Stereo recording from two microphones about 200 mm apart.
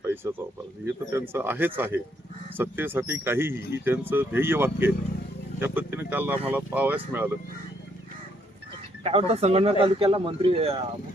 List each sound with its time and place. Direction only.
0.0 s a sound: 10° right (ahead or behind)
1.1 s speech: 10° right (ahead or behind)
9.0 s speech: 30° right (ahead or behind)